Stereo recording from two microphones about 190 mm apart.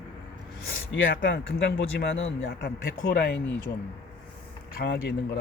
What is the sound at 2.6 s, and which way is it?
Speech, 60° left (ahead or behind).